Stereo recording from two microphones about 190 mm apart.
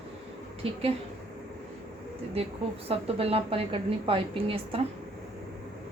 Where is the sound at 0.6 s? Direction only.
30° right (ahead or behind).